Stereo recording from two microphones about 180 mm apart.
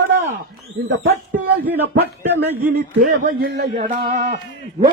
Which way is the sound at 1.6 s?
10° right (ahead or behind).